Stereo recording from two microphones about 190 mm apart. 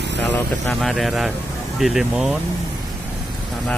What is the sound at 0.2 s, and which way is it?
Speech, 5° left (ahead or behind).